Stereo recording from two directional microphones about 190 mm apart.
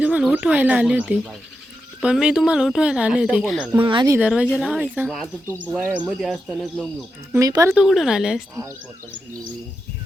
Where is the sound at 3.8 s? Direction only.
25° right (ahead or behind).